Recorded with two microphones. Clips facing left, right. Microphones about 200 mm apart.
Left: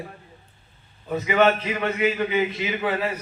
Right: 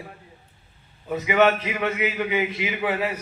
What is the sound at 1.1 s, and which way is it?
A man's voice, 15° right (ahead or behind).